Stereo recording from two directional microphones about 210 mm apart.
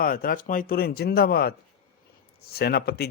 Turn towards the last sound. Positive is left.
turn(degrees=50)  # may be behind; listen again after turning